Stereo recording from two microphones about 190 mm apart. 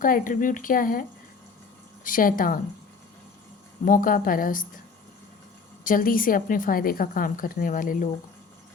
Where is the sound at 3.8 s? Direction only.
45° left (ahead or behind).